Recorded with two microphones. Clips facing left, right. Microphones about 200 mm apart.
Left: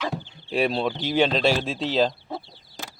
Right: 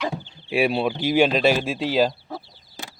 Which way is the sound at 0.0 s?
10° right (ahead or behind).